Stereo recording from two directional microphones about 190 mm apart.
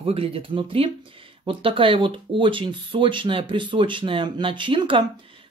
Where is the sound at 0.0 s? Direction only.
30° right (ahead or behind).